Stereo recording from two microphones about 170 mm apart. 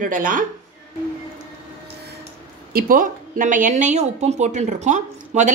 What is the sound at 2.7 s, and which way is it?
A woman's voice, 55° right (ahead or behind).